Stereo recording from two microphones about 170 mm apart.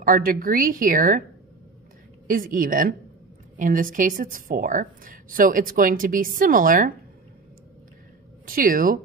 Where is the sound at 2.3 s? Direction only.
55° right (ahead or behind).